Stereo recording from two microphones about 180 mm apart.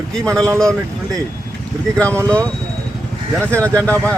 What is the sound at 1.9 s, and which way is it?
Speech, 5° left (ahead or behind).